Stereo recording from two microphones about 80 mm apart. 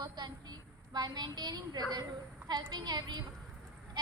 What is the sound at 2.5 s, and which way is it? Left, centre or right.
Speech, right.